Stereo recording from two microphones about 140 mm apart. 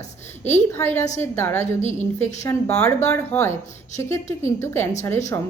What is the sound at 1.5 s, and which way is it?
Speech, 55° left (ahead or behind).